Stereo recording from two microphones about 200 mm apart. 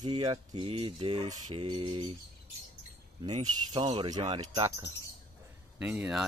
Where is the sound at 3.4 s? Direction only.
25° right (ahead or behind).